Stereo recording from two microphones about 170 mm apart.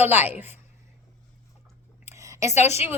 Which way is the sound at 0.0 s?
10° right (ahead or behind).